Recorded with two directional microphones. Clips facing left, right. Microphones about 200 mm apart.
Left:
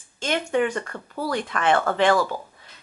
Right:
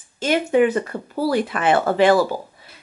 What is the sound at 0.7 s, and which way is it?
Speech, 20° right (ahead or behind).